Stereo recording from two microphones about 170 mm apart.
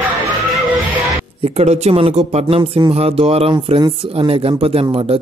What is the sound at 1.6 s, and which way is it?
Speech, 40° right (ahead or behind).